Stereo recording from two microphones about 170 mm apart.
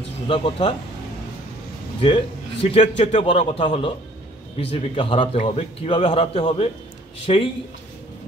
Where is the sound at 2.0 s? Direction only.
30° left (ahead or behind).